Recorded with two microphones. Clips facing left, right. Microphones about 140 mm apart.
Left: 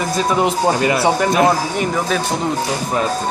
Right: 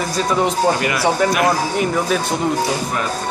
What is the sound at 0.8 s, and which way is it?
Speech, 25° left (ahead or behind).